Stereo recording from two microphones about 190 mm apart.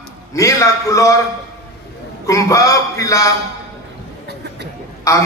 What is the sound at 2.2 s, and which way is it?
A man's voice, 15° left (ahead or behind).